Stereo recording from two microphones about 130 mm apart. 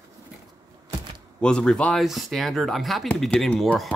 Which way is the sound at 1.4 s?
5° left (ahead or behind).